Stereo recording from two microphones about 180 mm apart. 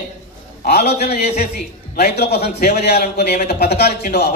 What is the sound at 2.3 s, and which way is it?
A man's voice, 60° left (ahead or behind).